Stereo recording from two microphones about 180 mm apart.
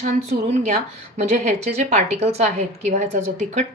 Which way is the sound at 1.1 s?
40° right (ahead or behind).